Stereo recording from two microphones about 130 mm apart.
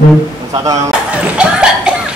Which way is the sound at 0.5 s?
25° right (ahead or behind).